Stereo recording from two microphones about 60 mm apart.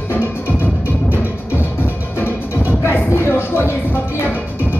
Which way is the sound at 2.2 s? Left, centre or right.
Left.